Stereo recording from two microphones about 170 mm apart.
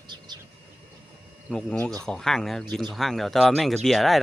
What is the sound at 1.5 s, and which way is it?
Speech, 5° left (ahead or behind).